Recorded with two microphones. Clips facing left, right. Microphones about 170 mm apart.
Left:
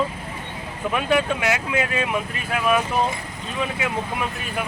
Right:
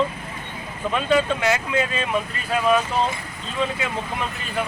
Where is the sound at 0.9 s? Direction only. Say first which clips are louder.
Right 1 dB; 10° left (ahead or behind).